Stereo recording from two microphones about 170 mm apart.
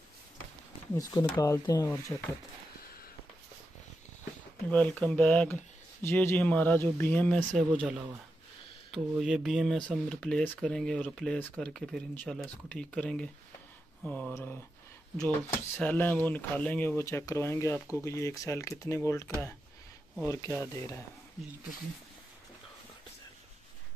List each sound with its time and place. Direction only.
0.9 s speech: 15° left (ahead or behind)
4.6 s speech: 5° left (ahead or behind)
8.9 s speech: centre (ahead or behind); by 17.7 s 15° left (ahead or behind)
17.7 s speech: 15° right (ahead or behind)
18.0 s speech: 20° left (ahead or behind)
20.2 s speech: 15° left (ahead or behind)